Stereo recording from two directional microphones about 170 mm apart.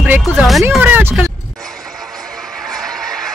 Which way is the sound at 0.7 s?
10° right (ahead or behind).